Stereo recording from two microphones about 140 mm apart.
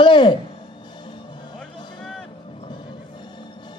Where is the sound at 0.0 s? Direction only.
35° left (ahead or behind).